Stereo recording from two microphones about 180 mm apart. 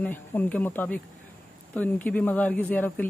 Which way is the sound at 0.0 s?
10° left (ahead or behind).